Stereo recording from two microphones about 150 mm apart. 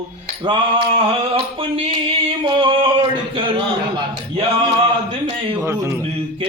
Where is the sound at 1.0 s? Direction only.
40° right (ahead or behind).